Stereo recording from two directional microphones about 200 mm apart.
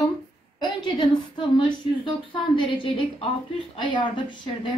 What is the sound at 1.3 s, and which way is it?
A woman's voice, 25° left (ahead or behind).